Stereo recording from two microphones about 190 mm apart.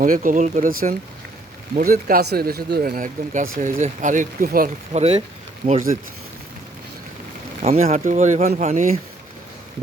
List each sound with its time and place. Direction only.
0.0 s speech: 45° right (ahead or behind)
7.6 s speech: 35° right (ahead or behind)